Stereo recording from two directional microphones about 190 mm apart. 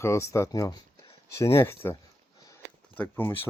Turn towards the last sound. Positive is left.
turn(degrees=10)  # may be behind; listen again after turning